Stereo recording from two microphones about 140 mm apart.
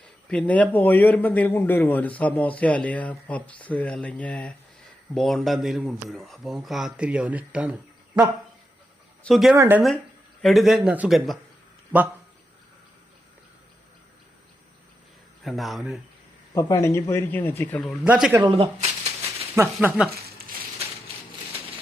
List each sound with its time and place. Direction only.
0.3 s speech: 10° left (ahead or behind)
9.6 s speech: 15° right (ahead or behind)
10.4 s speech: centre (ahead or behind)
15.4 s speech: centre (ahead or behind)
16.6 s speech: 25° left (ahead or behind)
18.0 s speech: 10° right (ahead or behind)
18.4 s a sound: 40° right (ahead or behind)
19.5 s speech: 15° right (ahead or behind)